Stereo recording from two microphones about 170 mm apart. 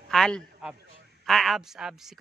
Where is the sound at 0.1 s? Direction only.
Centre (ahead or behind).